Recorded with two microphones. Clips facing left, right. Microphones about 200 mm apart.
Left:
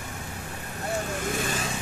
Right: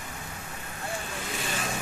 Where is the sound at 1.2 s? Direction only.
50° left (ahead or behind).